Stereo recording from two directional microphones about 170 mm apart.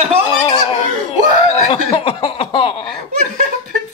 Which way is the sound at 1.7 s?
30° left (ahead or behind).